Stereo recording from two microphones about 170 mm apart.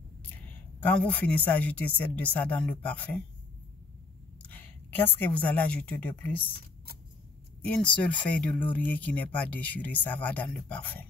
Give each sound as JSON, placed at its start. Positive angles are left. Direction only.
{"t": 0.8, "sound": "speech", "side_deg": 10}
{"t": 4.4, "sound": "a woman's voice", "side_deg": 10}
{"t": 7.6, "sound": "speech", "side_deg": 5}